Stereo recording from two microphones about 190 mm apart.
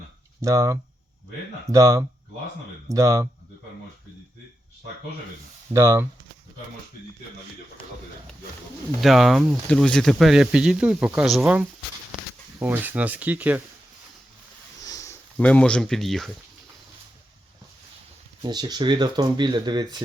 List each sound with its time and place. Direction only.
0.4 s speech: 15° right (ahead or behind)
5.7 s speech: 15° right (ahead or behind)
9.0 s speech: centre (ahead or behind)
14.8 s sniff: 20° left (ahead or behind)
15.4 s speech: 5° left (ahead or behind)
18.4 s speech: 20° right (ahead or behind)